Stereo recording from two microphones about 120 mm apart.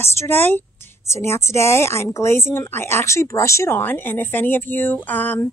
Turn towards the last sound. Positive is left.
turn(degrees=15)  # may be behind; listen again after turning